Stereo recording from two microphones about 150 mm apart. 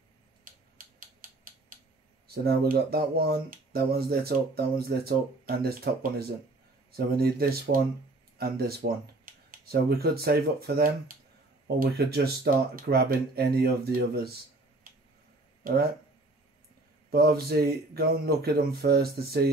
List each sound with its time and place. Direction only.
0.5 s a sound: 70° right (ahead or behind)
2.2 s speech: 90° right
15.6 s speech: 90° right
17.1 s speech: 90° right